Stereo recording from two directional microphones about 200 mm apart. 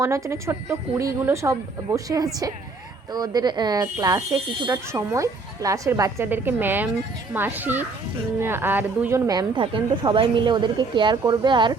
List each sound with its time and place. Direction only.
0.0 s speech: 15° right (ahead or behind)